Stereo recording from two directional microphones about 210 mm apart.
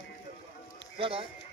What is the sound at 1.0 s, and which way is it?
Speech, 25° right (ahead or behind).